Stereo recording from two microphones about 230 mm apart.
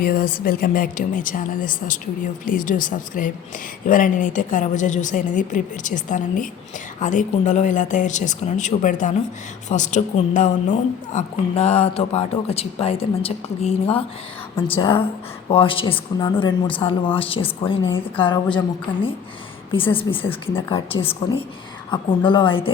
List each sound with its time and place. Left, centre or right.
0.0 s a woman's voice: left
19.7 s a woman's voice: left